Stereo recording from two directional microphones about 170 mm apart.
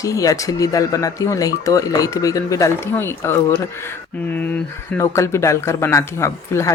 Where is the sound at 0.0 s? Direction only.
20° left (ahead or behind).